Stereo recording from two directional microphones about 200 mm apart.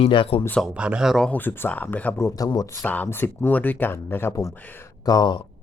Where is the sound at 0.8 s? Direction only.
5° right (ahead or behind); by 5.4 s 20° left (ahead or behind).